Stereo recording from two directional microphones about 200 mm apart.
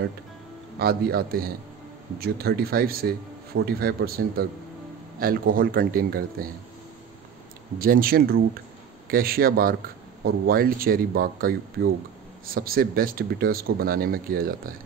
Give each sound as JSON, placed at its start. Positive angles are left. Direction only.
{"t": 0.7, "sound": "a man's voice", "side_deg": -50}
{"t": 7.8, "sound": "a man's voice", "side_deg": -45}